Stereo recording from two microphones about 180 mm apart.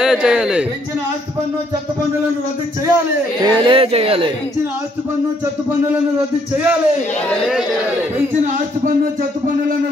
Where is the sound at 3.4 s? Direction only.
25° right (ahead or behind).